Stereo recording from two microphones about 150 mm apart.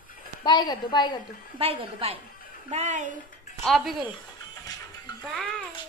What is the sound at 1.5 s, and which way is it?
Speech, 40° right (ahead or behind).